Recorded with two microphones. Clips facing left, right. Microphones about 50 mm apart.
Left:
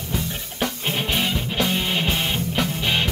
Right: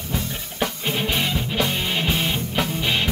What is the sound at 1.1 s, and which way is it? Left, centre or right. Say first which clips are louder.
Music: even; centre.